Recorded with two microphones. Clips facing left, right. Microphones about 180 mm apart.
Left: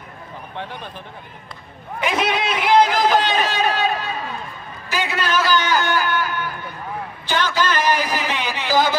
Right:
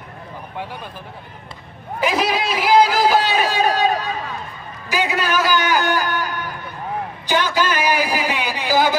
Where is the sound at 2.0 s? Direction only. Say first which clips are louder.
Right 1 dB; centre (ahead or behind).